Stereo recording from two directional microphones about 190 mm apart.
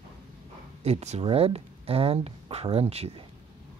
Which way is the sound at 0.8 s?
35° right (ahead or behind).